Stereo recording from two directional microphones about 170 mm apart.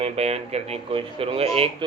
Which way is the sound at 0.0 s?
40° right (ahead or behind).